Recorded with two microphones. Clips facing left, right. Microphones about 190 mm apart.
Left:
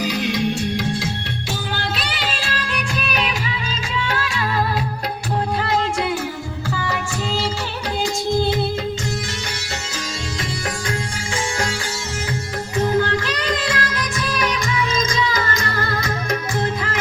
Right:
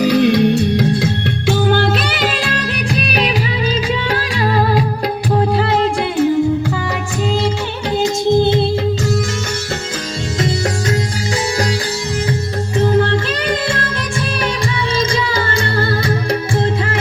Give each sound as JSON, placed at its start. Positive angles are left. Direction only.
{"t": 0.0, "sound": "music", "side_deg": -60}
{"t": 8.0, "sound": "music", "side_deg": -20}
{"t": 12.7, "sound": "music", "side_deg": -25}
{"t": 14.9, "sound": "music", "side_deg": -30}